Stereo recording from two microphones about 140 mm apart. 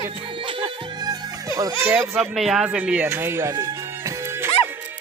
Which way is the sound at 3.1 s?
15° right (ahead or behind).